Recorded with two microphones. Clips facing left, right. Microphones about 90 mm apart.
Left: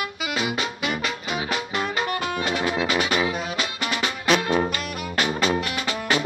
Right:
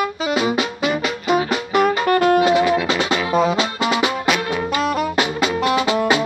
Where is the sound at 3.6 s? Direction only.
90° right.